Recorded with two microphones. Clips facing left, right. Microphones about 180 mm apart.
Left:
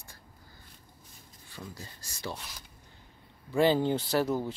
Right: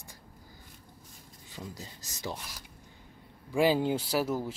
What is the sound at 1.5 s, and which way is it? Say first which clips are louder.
Speech: right 1 dB; 15° right (ahead or behind).